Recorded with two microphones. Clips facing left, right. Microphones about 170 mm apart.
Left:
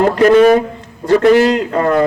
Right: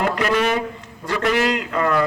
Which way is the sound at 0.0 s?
40° left (ahead or behind).